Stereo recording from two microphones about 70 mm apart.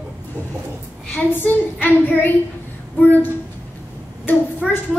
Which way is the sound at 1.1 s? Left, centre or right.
Left.